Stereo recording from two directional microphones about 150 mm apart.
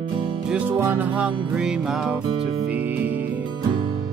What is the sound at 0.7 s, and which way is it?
Music, 15° right (ahead or behind).